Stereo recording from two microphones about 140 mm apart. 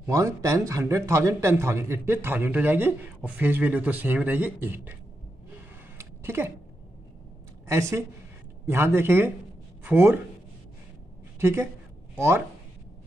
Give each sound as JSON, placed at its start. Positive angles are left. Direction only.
{"t": 0.0, "sound": "speech", "side_deg": -20}
{"t": 5.9, "sound": "a sound", "side_deg": -15}
{"t": 7.6, "sound": "speech", "side_deg": -20}
{"t": 11.3, "sound": "a woman's voice", "side_deg": -15}